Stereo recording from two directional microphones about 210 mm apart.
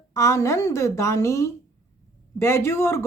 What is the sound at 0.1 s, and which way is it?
Speech, 15° left (ahead or behind).